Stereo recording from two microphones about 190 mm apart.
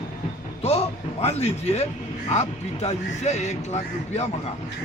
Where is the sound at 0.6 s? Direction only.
35° left (ahead or behind).